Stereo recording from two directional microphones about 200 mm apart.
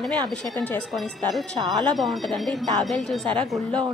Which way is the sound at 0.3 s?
5° left (ahead or behind).